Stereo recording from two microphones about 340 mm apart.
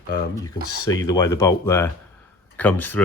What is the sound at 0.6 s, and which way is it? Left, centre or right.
Speech, left.